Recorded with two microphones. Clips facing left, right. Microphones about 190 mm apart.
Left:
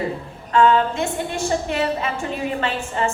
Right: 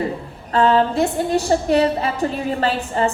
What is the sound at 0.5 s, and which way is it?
A woman's voice, 35° right (ahead or behind).